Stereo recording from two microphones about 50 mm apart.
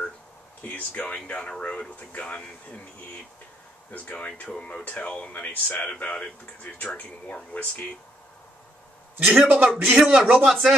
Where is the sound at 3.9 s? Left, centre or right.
Left.